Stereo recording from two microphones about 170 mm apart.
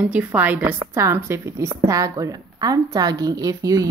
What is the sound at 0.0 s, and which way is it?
A woman's voice, 10° right (ahead or behind).